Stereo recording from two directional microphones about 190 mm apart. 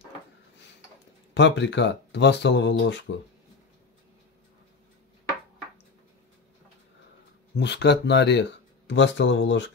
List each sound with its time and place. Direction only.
1.3 s speech: 70° left (ahead or behind)
7.5 s speech: 65° left (ahead or behind)